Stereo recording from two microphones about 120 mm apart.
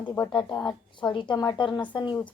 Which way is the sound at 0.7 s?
40° left (ahead or behind).